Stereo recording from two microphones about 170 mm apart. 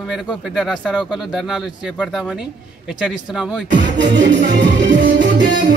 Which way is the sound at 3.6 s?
90° right.